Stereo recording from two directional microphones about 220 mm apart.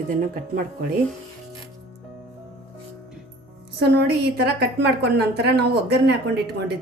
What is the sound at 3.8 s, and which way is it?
Speech, 50° right (ahead or behind).